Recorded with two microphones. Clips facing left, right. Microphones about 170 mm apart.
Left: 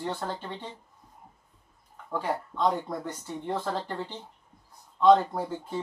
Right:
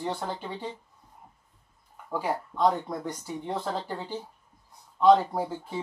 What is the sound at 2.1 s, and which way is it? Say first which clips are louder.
Speech: right 1 dB; 10° right (ahead or behind).